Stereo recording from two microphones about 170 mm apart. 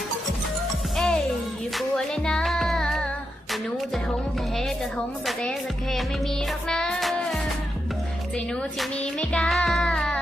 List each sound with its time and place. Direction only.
0.9 s music: 5° left (ahead or behind)
8.8 s music: 5° left (ahead or behind)